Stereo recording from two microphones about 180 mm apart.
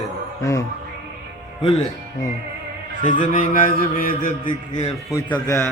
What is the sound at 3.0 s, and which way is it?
A man's voice, 45° left (ahead or behind).